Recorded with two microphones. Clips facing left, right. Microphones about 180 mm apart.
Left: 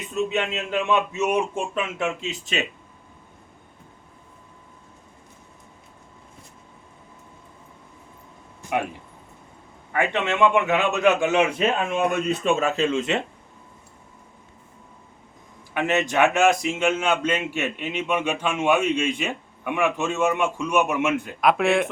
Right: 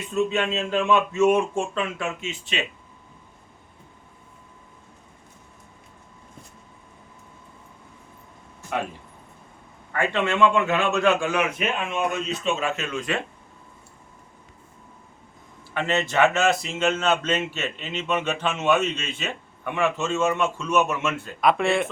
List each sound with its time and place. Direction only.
0.3 s speech: 15° left (ahead or behind)
2.2 s speech: 40° left (ahead or behind)
9.9 s a man's voice: 20° left (ahead or behind)
11.9 s speech: 55° left (ahead or behind)
12.7 s a man's voice: 30° left (ahead or behind)
15.7 s speech: 15° left (ahead or behind)
21.4 s speech: centre (ahead or behind)